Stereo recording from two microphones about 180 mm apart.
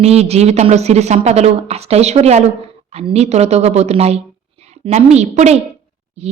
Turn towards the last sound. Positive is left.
turn(degrees=-35)  # may be behind; listen again after turning